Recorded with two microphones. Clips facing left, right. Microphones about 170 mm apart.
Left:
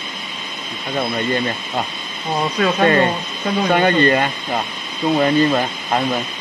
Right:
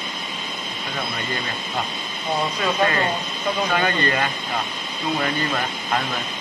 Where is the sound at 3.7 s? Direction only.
30° left (ahead or behind).